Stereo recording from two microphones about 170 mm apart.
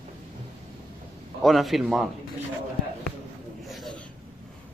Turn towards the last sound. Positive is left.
turn(degrees=0)  # may be behind; listen again after turning